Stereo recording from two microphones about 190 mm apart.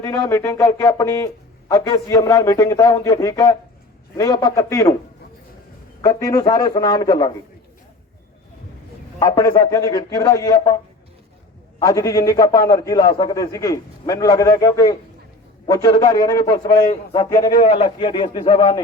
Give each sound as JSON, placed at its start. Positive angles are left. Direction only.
{"t": 0.0, "sound": "a man's voice", "side_deg": 15}
{"t": 6.0, "sound": "a man's voice", "side_deg": 20}
{"t": 9.1, "sound": "a man's voice", "side_deg": 20}
{"t": 11.8, "sound": "a man's voice", "side_deg": 20}
{"t": 17.6, "sound": "a man's voice", "side_deg": 30}